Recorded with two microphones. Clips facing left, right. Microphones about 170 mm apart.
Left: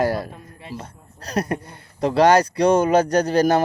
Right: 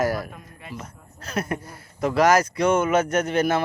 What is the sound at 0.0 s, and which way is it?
A man's voice, 30° left (ahead or behind).